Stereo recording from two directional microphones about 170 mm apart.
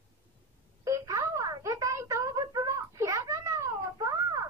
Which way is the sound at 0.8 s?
20° right (ahead or behind).